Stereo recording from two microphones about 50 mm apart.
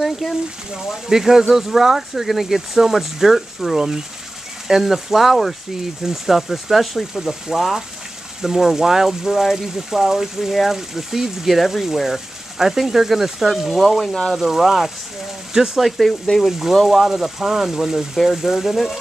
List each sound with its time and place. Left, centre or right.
0.0 s speech: centre
14.4 s speech: centre
16.0 s speech: centre
16.4 s speech: centre